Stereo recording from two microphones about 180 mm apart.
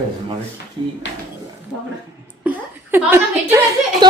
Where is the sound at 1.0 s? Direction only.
85° left.